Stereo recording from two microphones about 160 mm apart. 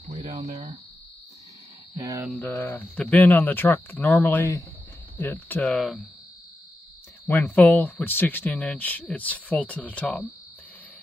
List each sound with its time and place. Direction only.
0.0 s a sound: 45° right (ahead or behind)
0.4 s speech: 45° right (ahead or behind)
2.0 s mantra: 20° right (ahead or behind)
2.3 s speech: 10° left (ahead or behind)
7.2 s speech: 10° left (ahead or behind)